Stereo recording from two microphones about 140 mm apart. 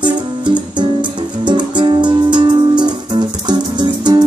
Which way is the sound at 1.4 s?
35° right (ahead or behind).